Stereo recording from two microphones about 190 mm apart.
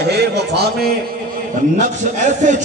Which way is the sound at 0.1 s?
60° right (ahead or behind).